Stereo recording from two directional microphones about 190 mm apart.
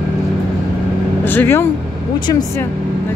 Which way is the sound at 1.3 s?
10° left (ahead or behind).